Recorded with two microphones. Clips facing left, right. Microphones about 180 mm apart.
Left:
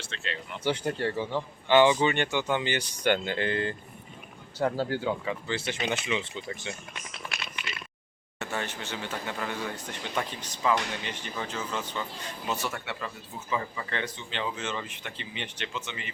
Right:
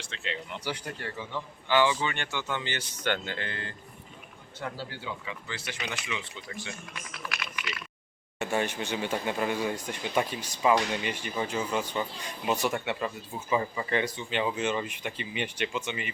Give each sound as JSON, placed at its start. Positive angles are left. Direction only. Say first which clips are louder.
{"t": 0.0, "sound": "speech", "louder": "even", "side_deg": -15}
{"t": 0.6, "sound": "speech", "louder": "left 13 dB", "side_deg": 25}
{"t": 4.5, "sound": "speech", "louder": "left 10 dB", "side_deg": 45}
{"t": 5.5, "sound": "speech", "louder": "left 6 dB", "side_deg": 25}
{"t": 8.4, "sound": "speech", "louder": "right 5 dB", "side_deg": -15}